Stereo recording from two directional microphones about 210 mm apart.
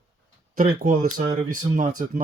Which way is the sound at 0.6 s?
40° right (ahead or behind).